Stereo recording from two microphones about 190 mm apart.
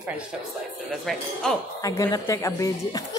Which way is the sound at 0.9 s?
Centre (ahead or behind).